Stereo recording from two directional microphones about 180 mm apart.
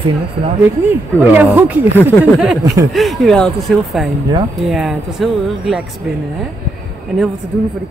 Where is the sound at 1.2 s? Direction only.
10° right (ahead or behind).